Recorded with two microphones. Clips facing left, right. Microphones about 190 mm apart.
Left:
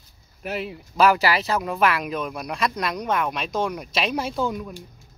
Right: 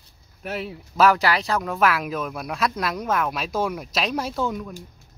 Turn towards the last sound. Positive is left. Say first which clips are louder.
# even
turn(degrees=0)  # may be behind; listen again after turning